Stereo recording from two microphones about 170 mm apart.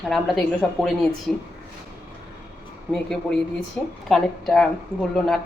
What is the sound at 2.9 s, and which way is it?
A woman's voice, 5° left (ahead or behind).